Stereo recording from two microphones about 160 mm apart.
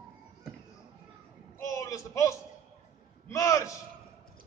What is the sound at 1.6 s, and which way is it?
A man's voice, 20° left (ahead or behind).